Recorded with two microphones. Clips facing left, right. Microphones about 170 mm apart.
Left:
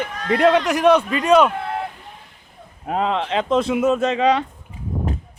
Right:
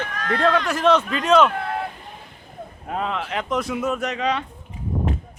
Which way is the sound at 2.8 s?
25° left (ahead or behind).